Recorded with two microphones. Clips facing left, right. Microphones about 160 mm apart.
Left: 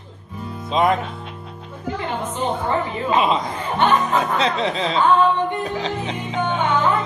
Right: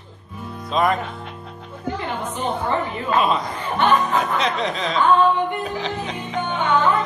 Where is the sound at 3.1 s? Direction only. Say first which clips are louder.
Left 1 dB; 20° left (ahead or behind).